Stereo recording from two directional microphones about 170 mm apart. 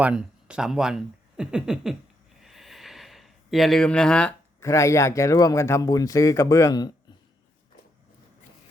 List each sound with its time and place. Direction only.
0.0 s speech: 5° right (ahead or behind)
2.4 s a sound: centre (ahead or behind)
4.6 s speech: 15° left (ahead or behind)